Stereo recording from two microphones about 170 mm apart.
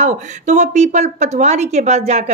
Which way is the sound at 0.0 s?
45° right (ahead or behind).